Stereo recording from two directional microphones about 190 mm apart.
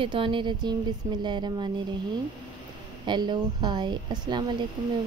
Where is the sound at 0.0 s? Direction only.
25° right (ahead or behind).